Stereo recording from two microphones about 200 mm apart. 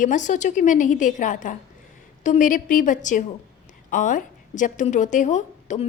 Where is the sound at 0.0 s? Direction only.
40° left (ahead or behind).